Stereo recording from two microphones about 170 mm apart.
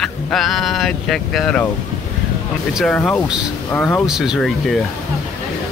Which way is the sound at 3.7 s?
10° left (ahead or behind).